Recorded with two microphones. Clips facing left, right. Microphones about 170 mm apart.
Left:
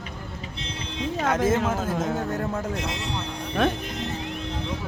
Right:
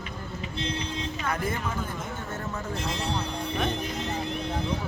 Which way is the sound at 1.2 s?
85° left.